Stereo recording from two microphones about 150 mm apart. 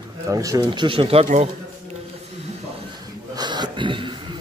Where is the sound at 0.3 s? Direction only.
25° right (ahead or behind).